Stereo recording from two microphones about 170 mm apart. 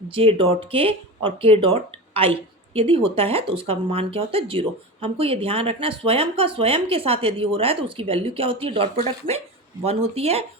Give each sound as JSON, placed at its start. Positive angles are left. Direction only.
{"t": 0.1, "sound": "speech", "side_deg": -30}